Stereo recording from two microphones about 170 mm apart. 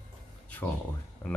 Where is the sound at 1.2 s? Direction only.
10° left (ahead or behind).